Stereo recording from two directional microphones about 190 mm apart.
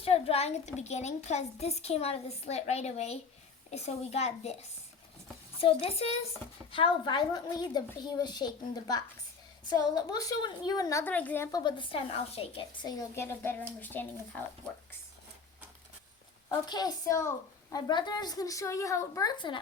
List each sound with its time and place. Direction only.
0.0 s a child's voice: 30° left (ahead or behind)
5.5 s a child's voice: 30° left (ahead or behind); by 11.4 s 10° left (ahead or behind)
11.5 s a woman's voice: 25° left (ahead or behind)
13.1 s speech: 10° left (ahead or behind)
16.5 s a woman's voice: 20° left (ahead or behind)